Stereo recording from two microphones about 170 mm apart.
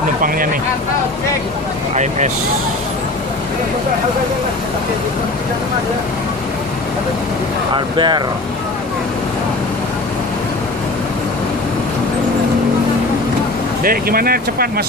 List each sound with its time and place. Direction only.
2.0 s speech: 45° right (ahead or behind)
7.7 s speech: 25° right (ahead or behind)
13.8 s speech: 60° right (ahead or behind)